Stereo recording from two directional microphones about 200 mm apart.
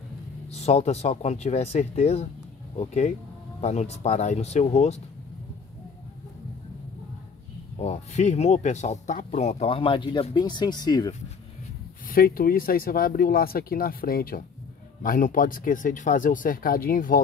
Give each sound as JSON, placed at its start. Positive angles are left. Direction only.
{"t": 0.5, "sound": "speech", "side_deg": 30}
{"t": 7.8, "sound": "speech", "side_deg": 35}
{"t": 12.1, "sound": "speech", "side_deg": 45}